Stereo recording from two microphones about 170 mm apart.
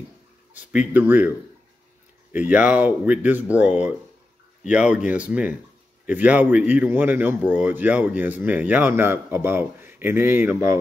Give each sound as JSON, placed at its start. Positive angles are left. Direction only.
{"t": 0.5, "sound": "a man's voice", "side_deg": -10}
{"t": 2.3, "sound": "a man's voice", "side_deg": -10}